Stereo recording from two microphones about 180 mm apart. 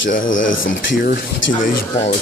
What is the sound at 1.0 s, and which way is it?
Speech, 50° left (ahead or behind).